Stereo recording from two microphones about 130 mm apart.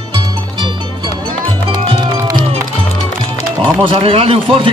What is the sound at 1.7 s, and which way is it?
Music, 45° right (ahead or behind).